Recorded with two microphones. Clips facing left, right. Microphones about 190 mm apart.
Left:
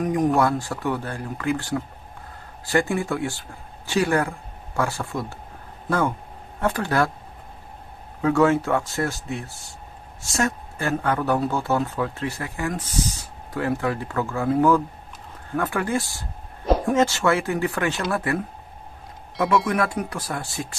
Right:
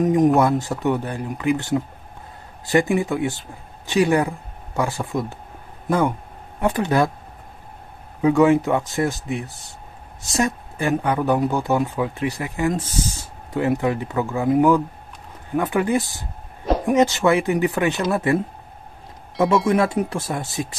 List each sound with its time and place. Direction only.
0.0 s speech: 20° right (ahead or behind)
8.2 s speech: 15° right (ahead or behind)